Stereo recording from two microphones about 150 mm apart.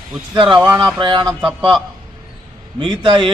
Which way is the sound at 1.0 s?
30° right (ahead or behind).